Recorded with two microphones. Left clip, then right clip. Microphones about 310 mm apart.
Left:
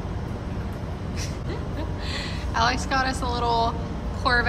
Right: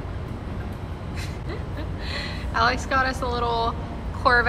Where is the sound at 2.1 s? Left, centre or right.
Centre.